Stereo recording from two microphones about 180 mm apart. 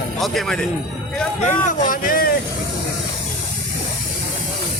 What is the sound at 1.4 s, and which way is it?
Speech, 50° left (ahead or behind).